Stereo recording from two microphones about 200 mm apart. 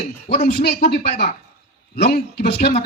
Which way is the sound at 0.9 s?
55° left (ahead or behind).